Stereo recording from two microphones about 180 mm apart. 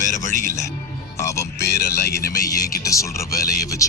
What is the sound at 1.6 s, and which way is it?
Speech, 65° left (ahead or behind).